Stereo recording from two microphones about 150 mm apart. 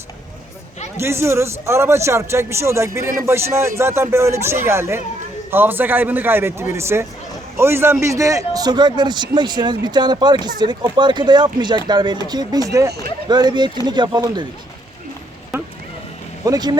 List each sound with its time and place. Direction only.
0.9 s a man's voice: 15° right (ahead or behind)
16.4 s a man's voice: 25° right (ahead or behind)